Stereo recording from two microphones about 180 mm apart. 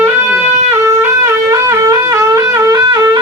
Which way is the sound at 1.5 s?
20° right (ahead or behind).